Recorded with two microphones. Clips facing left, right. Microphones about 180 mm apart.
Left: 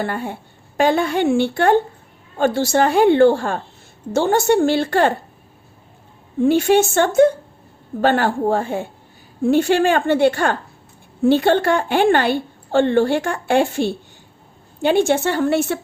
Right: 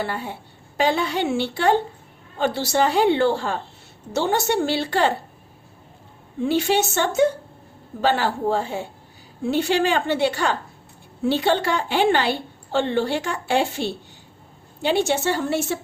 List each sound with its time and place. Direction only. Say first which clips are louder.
0.0 s a woman's voice: left 4 dB; 50° left (ahead or behind)
6.4 s a woman's voice: left 6 dB; 50° left (ahead or behind)